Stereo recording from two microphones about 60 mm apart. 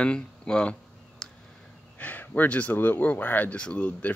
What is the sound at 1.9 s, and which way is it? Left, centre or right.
Speech, left.